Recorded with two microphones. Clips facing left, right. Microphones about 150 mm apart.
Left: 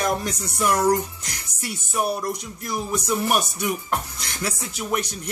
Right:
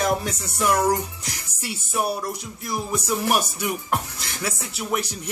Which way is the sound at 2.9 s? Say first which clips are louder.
Even; 5° right (ahead or behind).